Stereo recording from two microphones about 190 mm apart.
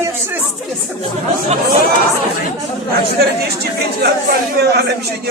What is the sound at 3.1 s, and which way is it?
Speech, 55° right (ahead or behind).